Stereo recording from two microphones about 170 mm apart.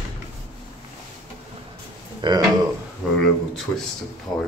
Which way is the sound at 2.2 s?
25° right (ahead or behind).